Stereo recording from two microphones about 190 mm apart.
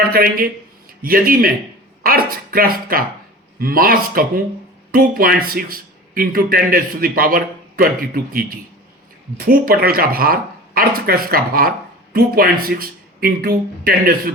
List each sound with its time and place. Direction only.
0.0 s speech: 50° right (ahead or behind)